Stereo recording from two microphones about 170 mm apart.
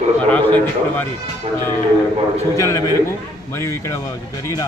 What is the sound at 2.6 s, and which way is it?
A man's voice, 20° left (ahead or behind).